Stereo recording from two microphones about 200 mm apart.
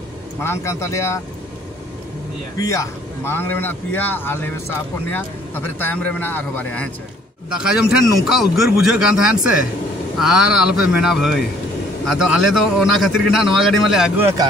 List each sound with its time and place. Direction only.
0.4 s speech: 15° left (ahead or behind)
2.5 s speech: 15° left (ahead or behind)
7.4 s a man's voice: 5° right (ahead or behind)